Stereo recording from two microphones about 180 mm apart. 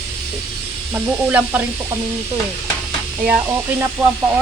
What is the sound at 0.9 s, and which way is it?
Speech, 10° right (ahead or behind).